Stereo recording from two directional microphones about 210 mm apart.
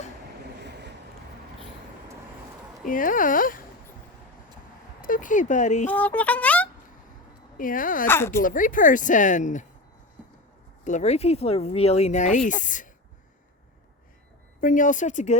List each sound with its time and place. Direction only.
0.6 s boat: 55° right (ahead or behind)
2.8 s speech: 40° left (ahead or behind)
4.9 s speech: 40° left (ahead or behind)
5.9 s speech: 5° left (ahead or behind)
7.5 s speech: 40° left (ahead or behind)
8.0 s speech: 10° left (ahead or behind)
8.4 s speech: 40° left (ahead or behind)
10.8 s speech: 35° left (ahead or behind)
14.6 s speech: 40° left (ahead or behind)